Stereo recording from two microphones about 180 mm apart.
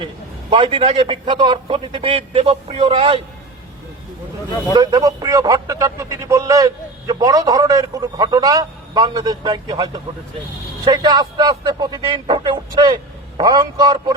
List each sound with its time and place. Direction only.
0.5 s speech: 30° right (ahead or behind)
4.7 s speech: 25° right (ahead or behind)